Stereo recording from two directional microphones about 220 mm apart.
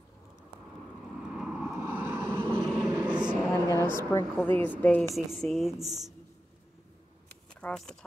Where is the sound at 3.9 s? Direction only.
10° left (ahead or behind).